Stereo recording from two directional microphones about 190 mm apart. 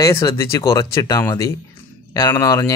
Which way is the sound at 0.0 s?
15° left (ahead or behind).